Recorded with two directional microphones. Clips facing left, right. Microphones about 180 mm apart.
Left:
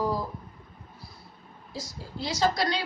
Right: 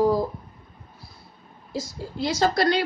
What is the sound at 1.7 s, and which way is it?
A woman's voice, 55° right (ahead or behind).